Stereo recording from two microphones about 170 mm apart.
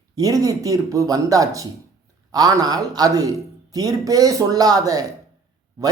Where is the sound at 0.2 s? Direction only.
20° right (ahead or behind).